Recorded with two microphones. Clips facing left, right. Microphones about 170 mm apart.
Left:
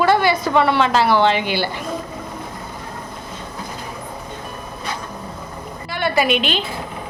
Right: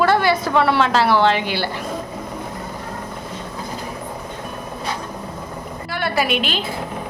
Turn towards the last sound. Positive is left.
turn(degrees=-5)  # may be behind; listen again after turning